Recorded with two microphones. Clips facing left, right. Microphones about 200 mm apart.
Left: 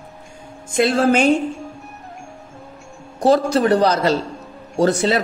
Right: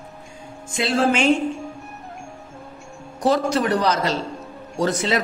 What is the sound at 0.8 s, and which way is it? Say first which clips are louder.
Speech: left 4 dB; 50° left (ahead or behind).